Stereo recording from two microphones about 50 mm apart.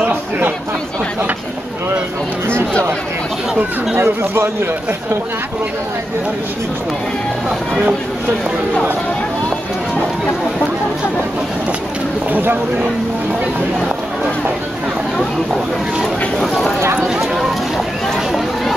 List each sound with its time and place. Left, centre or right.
4.0 s speech: right
12.3 s speech: right
16.0 s speech: centre